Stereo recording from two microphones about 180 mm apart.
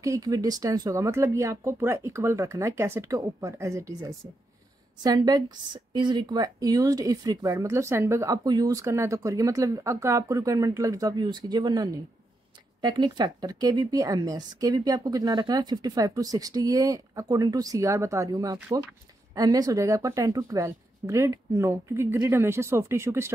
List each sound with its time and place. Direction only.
0.0 s a woman's voice: 20° right (ahead or behind)